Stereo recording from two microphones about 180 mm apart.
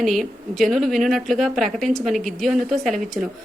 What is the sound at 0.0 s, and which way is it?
Speech, centre (ahead or behind).